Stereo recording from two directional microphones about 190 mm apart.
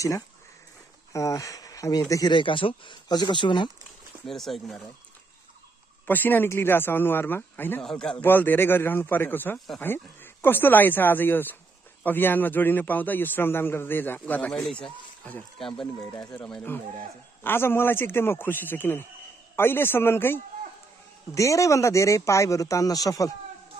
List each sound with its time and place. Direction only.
1.1 s speech: 15° left (ahead or behind)
4.3 s speech: centre (ahead or behind)
6.0 s speech: 10° left (ahead or behind)
16.1 s speech: 15° left (ahead or behind)
21.4 s speech: 15° left (ahead or behind)